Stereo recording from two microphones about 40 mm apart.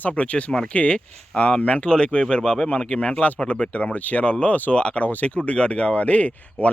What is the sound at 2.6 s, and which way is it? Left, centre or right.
Speech, left.